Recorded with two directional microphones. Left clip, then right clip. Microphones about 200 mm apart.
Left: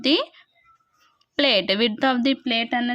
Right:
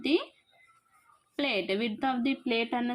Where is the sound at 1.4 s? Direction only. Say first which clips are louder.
Left 11 dB; 45° left (ahead or behind).